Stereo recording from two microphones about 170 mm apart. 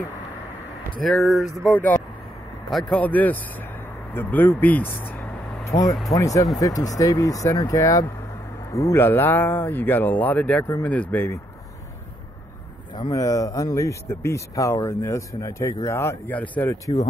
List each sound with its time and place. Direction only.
1.0 s speech: centre (ahead or behind)
12.9 s speech: 20° left (ahead or behind)